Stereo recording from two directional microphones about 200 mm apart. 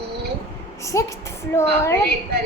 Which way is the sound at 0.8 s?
15° left (ahead or behind).